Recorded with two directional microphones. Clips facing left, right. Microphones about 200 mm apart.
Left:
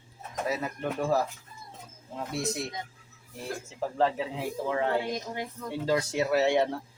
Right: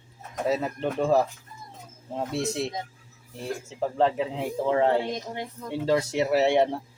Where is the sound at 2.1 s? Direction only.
30° right (ahead or behind).